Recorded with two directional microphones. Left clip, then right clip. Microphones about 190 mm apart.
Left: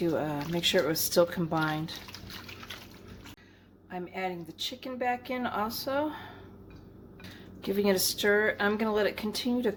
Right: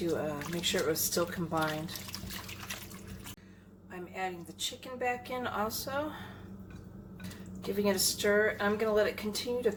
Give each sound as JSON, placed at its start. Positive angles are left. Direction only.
{"t": 0.3, "sound": "speech", "side_deg": 50}
{"t": 3.9, "sound": "speech", "side_deg": 45}
{"t": 7.6, "sound": "speech", "side_deg": 50}